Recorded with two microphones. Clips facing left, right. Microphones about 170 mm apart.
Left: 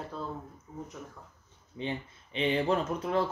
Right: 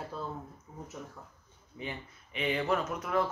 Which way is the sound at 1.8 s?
30° left (ahead or behind).